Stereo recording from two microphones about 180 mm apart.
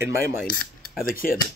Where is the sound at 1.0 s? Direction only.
50° left (ahead or behind).